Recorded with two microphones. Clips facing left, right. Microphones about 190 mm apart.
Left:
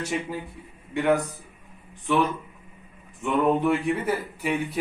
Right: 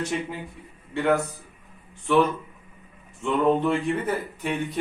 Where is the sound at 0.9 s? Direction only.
15° left (ahead or behind).